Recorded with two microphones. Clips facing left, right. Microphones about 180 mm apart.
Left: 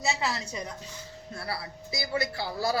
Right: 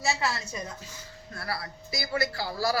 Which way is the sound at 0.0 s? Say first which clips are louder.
Right 1 dB; 20° left (ahead or behind).